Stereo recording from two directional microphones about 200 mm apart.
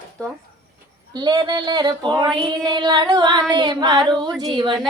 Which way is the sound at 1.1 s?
20° right (ahead or behind).